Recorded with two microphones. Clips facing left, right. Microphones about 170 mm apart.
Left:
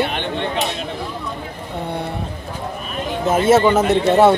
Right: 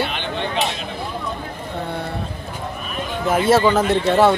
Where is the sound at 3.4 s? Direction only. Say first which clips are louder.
Left 2 dB; 20° left (ahead or behind).